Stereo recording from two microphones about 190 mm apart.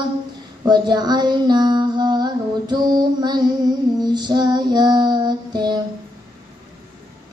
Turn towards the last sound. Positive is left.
turn(degrees=-20)  # may be behind; listen again after turning